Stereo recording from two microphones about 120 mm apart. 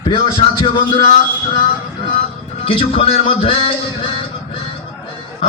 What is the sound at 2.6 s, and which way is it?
Speech, 50° left (ahead or behind).